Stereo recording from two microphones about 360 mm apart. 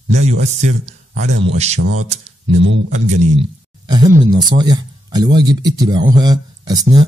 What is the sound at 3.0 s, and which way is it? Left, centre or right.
Speech, centre.